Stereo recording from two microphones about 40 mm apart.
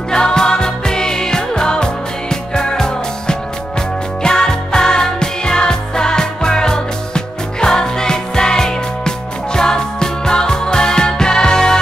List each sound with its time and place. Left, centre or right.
0.1 s music: centre